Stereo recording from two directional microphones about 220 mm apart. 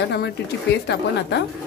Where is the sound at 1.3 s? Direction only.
50° left (ahead or behind).